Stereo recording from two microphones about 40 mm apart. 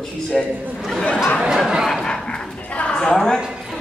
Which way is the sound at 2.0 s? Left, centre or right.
Centre.